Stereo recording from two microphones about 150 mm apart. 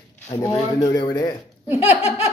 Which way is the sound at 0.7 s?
30° left (ahead or behind).